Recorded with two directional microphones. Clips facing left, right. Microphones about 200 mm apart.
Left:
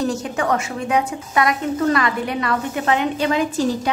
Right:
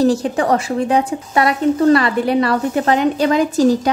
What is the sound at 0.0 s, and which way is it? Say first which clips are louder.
A woman's voice: right 7 dB; 35° right (ahead or behind).